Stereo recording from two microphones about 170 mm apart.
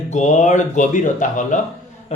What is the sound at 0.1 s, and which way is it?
Speech, 45° left (ahead or behind).